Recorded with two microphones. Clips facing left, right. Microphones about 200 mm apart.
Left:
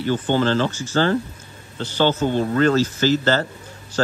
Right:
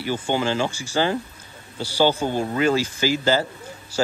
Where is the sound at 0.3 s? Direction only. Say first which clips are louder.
Left 3 dB; 10° right (ahead or behind).